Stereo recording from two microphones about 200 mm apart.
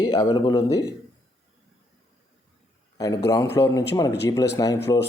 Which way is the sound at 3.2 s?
15° left (ahead or behind).